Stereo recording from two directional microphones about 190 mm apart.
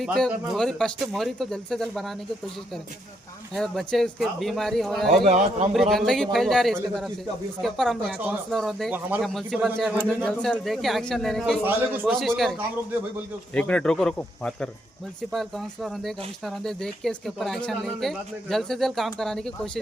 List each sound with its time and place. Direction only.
0.0 s speech: centre (ahead or behind)
3.5 s speech: centre (ahead or behind)
5.2 s a man's voice: 35° right (ahead or behind)
5.7 s speech: centre (ahead or behind)
11.6 s a man's voice: 10° right (ahead or behind)
12.1 s speech: centre (ahead or behind)